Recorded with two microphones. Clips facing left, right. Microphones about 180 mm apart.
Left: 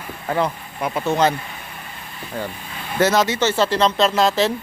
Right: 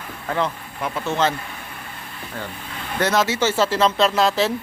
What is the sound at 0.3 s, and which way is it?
Speech, 15° left (ahead or behind).